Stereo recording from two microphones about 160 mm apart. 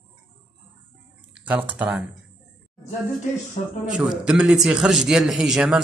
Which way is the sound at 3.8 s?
5° right (ahead or behind).